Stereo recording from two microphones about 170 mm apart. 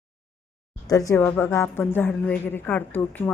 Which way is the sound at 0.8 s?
20° left (ahead or behind).